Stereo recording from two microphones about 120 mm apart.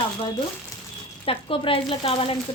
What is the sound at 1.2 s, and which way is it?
A woman's voice, 50° left (ahead or behind).